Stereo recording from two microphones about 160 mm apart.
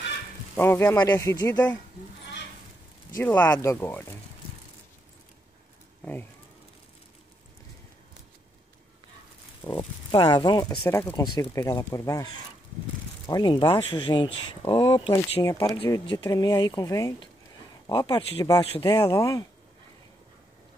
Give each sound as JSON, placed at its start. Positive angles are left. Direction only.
{"t": 0.6, "sound": "speech", "side_deg": 15}
{"t": 3.2, "sound": "speech", "side_deg": 10}
{"t": 9.8, "sound": "speech", "side_deg": 30}
{"t": 13.3, "sound": "speech", "side_deg": 30}
{"t": 15.4, "sound": "speech", "side_deg": 20}